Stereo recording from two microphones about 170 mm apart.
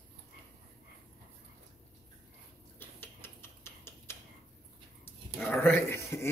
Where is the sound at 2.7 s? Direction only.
15° left (ahead or behind).